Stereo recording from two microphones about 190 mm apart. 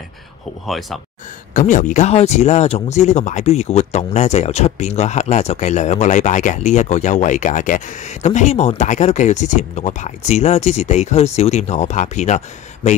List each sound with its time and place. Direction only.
0.7 s speech: centre (ahead or behind)
1.5 s speech: 45° left (ahead or behind)